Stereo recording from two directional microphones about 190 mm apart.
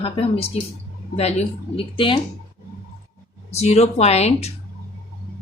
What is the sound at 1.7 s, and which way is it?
Speech, 25° left (ahead or behind).